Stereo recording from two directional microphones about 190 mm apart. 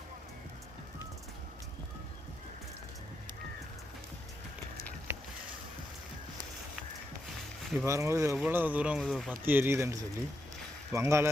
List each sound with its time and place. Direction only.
7.3 s a sound: centre (ahead or behind)
7.9 s speech: 15° right (ahead or behind); by 9.4 s centre (ahead or behind)
9.4 s speech: 10° right (ahead or behind)